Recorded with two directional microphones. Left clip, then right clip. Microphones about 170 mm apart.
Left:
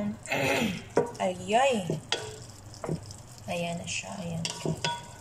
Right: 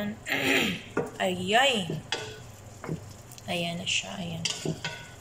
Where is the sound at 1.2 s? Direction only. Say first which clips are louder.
Right 4 dB; 5° left (ahead or behind).